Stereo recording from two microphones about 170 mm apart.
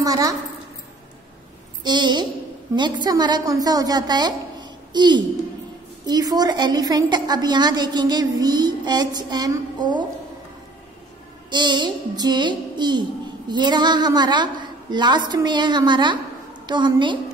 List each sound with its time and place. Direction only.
0.0 s speech: 20° right (ahead or behind)
1.8 s a child's voice: 25° right (ahead or behind)
11.5 s a woman's voice: 25° right (ahead or behind)